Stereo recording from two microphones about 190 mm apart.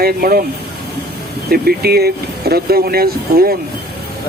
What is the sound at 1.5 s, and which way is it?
Speech, 55° right (ahead or behind).